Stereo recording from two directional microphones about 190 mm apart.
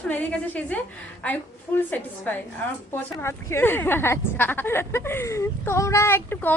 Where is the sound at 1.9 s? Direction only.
10° left (ahead or behind).